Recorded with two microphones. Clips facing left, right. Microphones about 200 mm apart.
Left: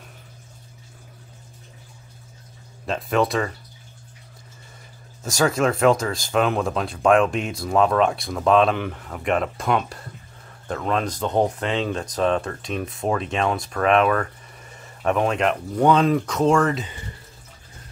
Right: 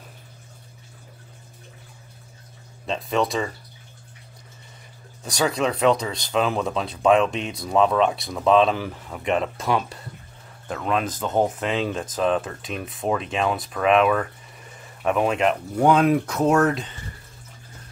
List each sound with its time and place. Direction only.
2.9 s speech: centre (ahead or behind)
5.2 s speech: centre (ahead or behind)